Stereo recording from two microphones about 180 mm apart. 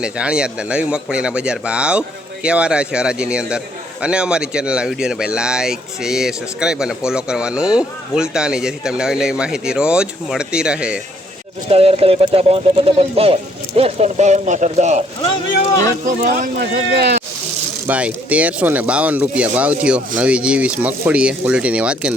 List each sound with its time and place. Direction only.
0.0 s speech: 5° right (ahead or behind)
11.7 s speech: 35° right (ahead or behind)
16.0 s speech: 50° right (ahead or behind); by 17.2 s 65° right (ahead or behind)
17.8 s speech: 10° right (ahead or behind)